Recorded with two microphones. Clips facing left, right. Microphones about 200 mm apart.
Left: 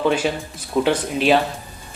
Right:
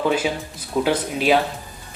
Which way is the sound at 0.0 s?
5° right (ahead or behind).